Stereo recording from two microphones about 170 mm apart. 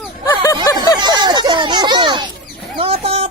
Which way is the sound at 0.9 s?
25° right (ahead or behind).